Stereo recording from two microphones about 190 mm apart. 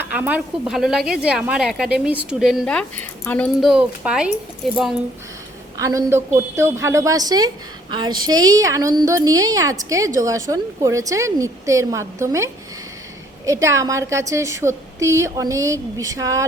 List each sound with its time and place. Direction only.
0.0 s a woman's voice: 10° right (ahead or behind)
5.8 s a woman's voice: 15° right (ahead or behind)